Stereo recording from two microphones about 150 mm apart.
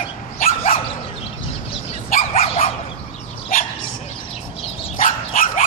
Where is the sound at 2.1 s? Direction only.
45° left (ahead or behind).